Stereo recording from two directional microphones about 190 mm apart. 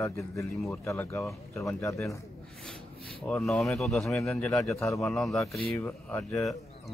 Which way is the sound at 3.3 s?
Centre (ahead or behind).